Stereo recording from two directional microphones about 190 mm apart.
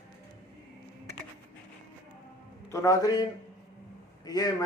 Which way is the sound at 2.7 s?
15° left (ahead or behind).